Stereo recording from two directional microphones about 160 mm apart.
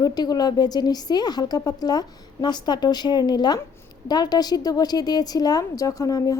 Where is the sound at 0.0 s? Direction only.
25° left (ahead or behind).